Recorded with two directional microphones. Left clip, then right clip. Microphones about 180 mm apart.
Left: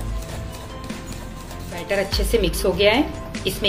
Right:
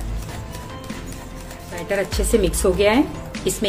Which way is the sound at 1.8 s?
50° right (ahead or behind).